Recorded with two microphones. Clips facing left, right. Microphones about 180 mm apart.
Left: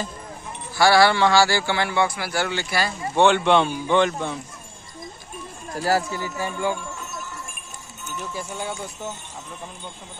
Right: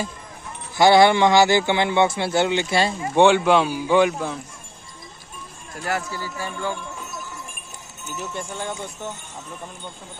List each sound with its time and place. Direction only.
0.7 s a man's voice: 20° right (ahead or behind)
5.7 s speech: 35° left (ahead or behind)
6.1 s speech: 15° left (ahead or behind)
8.2 s speech: 5° left (ahead or behind)